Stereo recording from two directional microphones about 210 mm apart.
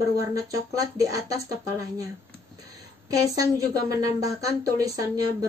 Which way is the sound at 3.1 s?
15° right (ahead or behind).